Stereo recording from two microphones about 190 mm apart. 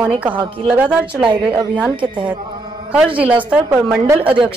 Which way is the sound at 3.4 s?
5° right (ahead or behind).